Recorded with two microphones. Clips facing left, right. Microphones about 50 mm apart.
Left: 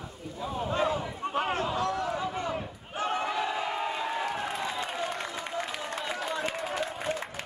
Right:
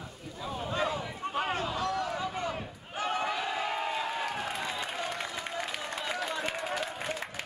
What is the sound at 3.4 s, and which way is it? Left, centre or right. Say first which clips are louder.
Crowd: left 2 dB; centre.